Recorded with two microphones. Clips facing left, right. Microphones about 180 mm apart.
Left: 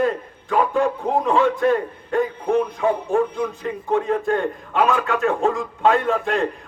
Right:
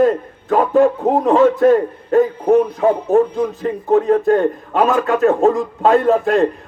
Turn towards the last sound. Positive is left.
turn(degrees=-40)  # may be behind; listen again after turning